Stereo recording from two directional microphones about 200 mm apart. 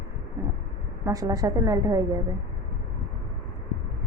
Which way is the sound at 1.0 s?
15° right (ahead or behind).